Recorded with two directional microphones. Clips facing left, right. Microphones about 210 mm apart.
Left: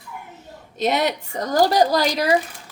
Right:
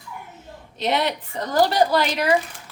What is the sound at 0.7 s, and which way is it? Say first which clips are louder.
A woman's voice: left 2 dB; 45° left (ahead or behind).